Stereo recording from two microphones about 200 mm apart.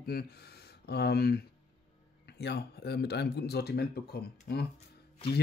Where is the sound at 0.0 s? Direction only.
50° left (ahead or behind).